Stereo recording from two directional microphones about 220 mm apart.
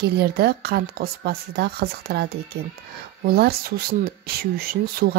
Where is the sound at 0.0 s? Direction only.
45° right (ahead or behind).